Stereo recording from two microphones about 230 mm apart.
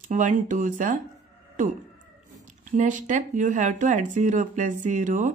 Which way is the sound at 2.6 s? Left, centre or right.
Right.